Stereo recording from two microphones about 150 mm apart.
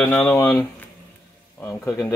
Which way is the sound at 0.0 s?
5° left (ahead or behind).